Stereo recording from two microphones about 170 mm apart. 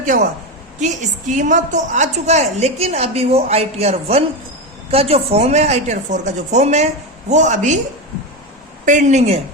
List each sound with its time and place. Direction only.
0.8 s a woman's voice: 45° right (ahead or behind)
8.8 s a woman's voice: 50° right (ahead or behind)